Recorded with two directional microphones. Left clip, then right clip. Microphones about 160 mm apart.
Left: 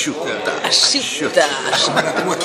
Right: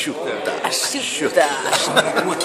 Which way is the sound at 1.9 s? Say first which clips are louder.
Even; 55° right (ahead or behind).